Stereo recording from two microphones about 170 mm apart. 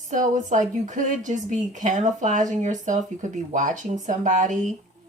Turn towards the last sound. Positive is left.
turn(degrees=-45)  # may be behind; listen again after turning